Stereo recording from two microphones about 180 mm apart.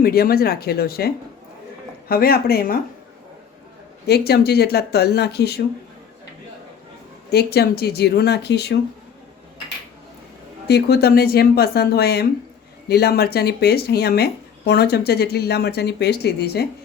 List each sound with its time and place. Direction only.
0.0 s speech: 55° left (ahead or behind)
4.0 s speech: 65° left (ahead or behind)
7.3 s speech: 65° left (ahead or behind)
10.7 s speech: 65° left (ahead or behind)